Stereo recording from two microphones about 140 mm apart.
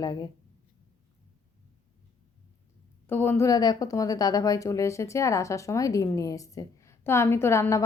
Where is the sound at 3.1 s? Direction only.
15° left (ahead or behind).